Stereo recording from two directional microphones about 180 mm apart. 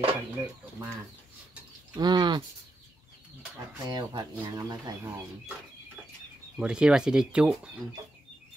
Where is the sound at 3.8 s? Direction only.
20° right (ahead or behind).